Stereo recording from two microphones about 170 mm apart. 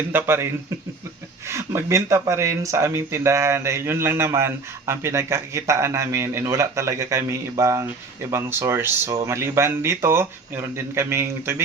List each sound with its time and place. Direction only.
0.1 s speech: 15° right (ahead or behind)
1.5 s speech: 15° right (ahead or behind)